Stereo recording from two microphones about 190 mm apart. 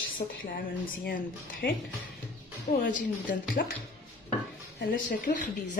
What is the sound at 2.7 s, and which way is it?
Speech, 45° left (ahead or behind).